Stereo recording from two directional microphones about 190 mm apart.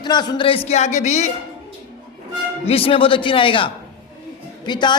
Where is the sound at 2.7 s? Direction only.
30° left (ahead or behind).